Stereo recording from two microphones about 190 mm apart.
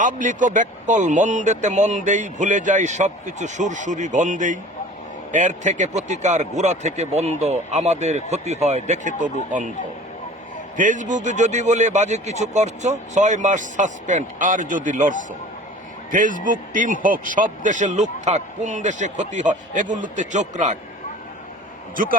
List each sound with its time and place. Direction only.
0.0 s speech: 45° right (ahead or behind)
10.8 s speech: 40° right (ahead or behind)
16.1 s speech: 45° right (ahead or behind)